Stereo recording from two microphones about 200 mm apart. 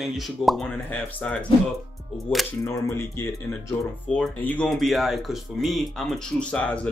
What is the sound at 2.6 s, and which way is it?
Speech, 15° left (ahead or behind).